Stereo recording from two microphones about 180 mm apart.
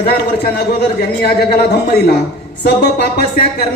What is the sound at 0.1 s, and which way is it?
A man's voice, 60° left (ahead or behind).